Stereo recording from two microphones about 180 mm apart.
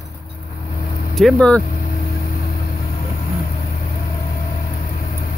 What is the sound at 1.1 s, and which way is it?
Speech, 5° left (ahead or behind).